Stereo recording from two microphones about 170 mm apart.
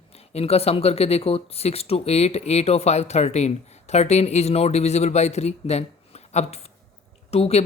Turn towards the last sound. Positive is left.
turn(degrees=40)  # may be behind; listen again after turning